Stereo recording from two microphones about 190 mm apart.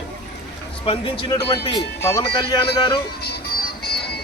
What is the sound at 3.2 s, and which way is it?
Music, 55° left (ahead or behind).